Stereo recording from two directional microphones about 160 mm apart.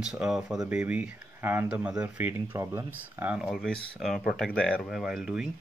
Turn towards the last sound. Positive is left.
turn(degrees=-5)  # may be behind; listen again after turning